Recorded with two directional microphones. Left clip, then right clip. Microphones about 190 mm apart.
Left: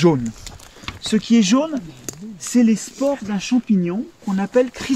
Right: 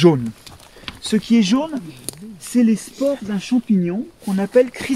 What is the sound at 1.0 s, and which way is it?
Speech, 10° right (ahead or behind).